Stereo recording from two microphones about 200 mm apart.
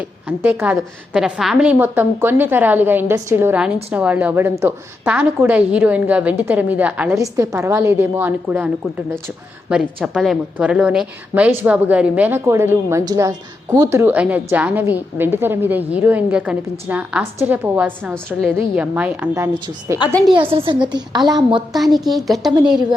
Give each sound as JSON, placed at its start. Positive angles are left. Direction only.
{"t": 0.0, "sound": "a woman's voice", "side_deg": -10}
{"t": 18.1, "sound": "a woman's voice", "side_deg": 5}
{"t": 18.8, "sound": "a woman's voice", "side_deg": -5}
{"t": 21.7, "sound": "a woman's voice", "side_deg": 0}